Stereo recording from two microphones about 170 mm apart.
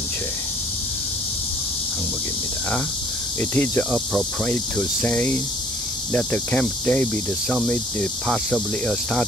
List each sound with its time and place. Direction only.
3.3 s cricket: 10° left (ahead or behind)